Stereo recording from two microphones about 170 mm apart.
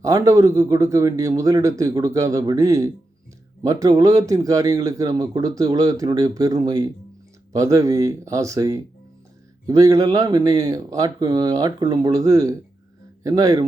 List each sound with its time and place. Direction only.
0.0 s a man's voice: 20° right (ahead or behind)